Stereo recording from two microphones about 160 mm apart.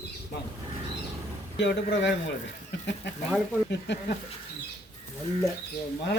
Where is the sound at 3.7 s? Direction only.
90° left.